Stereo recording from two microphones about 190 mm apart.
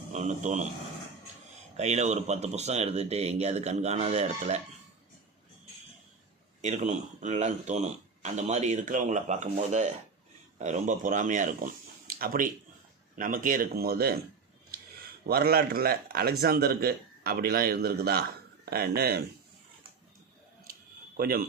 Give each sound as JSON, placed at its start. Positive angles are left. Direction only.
{"t": 0.1, "sound": "speech", "side_deg": -40}
{"t": 1.7, "sound": "speech", "side_deg": -35}
{"t": 6.6, "sound": "speech", "side_deg": -40}
{"t": 15.3, "sound": "speech", "side_deg": -55}
{"t": 21.2, "sound": "speech", "side_deg": -50}